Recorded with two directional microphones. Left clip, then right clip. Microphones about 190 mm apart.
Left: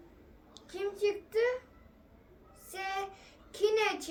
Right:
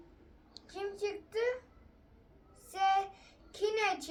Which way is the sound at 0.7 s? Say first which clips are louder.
Left 5 dB; 15° left (ahead or behind).